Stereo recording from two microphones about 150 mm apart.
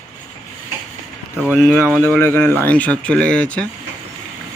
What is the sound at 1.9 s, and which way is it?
Speech, 10° left (ahead or behind).